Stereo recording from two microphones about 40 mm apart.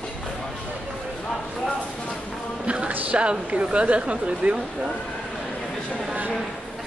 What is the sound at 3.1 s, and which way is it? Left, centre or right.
Speech, right.